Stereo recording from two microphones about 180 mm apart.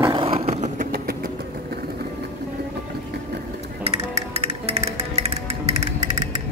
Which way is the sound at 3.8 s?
35° right (ahead or behind).